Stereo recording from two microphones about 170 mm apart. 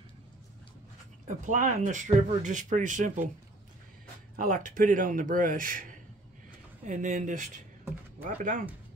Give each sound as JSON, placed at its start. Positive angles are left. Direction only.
{"t": 1.2, "sound": "speech", "side_deg": -50}
{"t": 4.4, "sound": "speech", "side_deg": -55}
{"t": 6.9, "sound": "speech", "side_deg": -50}